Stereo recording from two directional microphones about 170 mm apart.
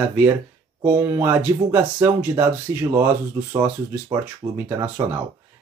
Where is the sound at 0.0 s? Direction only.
10° right (ahead or behind).